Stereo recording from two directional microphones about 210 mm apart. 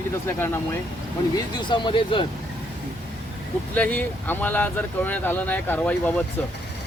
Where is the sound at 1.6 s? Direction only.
20° left (ahead or behind).